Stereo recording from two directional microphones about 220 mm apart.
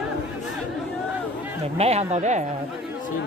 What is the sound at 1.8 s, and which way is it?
Speech, 30° right (ahead or behind).